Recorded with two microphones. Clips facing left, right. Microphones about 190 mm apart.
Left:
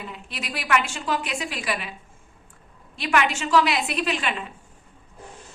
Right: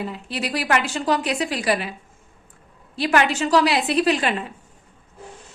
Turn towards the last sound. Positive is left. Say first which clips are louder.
# right 7 dB
turn(degrees=-35)  # may be behind; listen again after turning